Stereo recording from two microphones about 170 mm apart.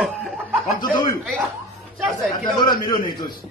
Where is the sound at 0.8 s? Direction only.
25° left (ahead or behind).